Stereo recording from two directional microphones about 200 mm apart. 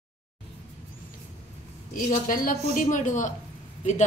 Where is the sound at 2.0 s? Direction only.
45° left (ahead or behind).